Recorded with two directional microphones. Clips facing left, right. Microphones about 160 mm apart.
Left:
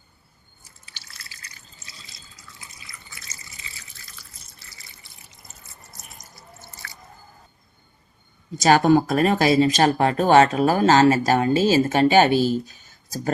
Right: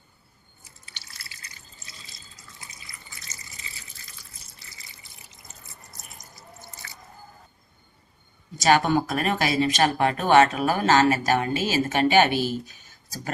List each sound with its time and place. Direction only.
6.8 s drip: 20° right (ahead or behind)
8.7 s speech: 40° left (ahead or behind)